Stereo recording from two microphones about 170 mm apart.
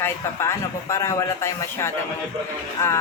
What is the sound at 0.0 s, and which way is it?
Speech, 15° left (ahead or behind).